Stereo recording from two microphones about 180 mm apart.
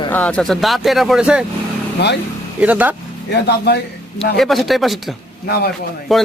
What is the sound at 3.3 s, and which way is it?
Speech, 65° left (ahead or behind).